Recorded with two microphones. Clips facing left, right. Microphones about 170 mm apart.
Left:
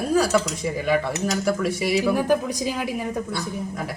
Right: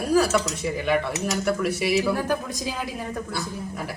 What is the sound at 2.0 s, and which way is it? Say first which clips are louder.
Speech: left 4 dB; 15° left (ahead or behind).